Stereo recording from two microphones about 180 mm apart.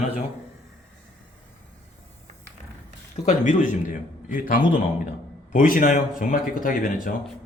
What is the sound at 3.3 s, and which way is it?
Speech, 45° left (ahead or behind).